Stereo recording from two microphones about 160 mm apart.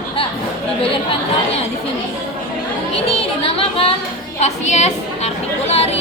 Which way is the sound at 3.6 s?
35° left (ahead or behind).